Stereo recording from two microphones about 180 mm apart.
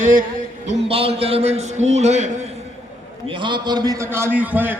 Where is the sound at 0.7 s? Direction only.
30° right (ahead or behind).